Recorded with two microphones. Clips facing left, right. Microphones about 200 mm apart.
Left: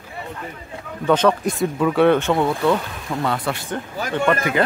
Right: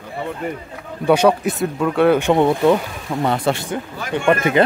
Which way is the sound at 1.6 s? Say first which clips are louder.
Left 2 dB; centre (ahead or behind).